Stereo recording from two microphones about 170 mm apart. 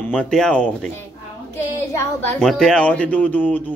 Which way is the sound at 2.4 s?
Centre (ahead or behind).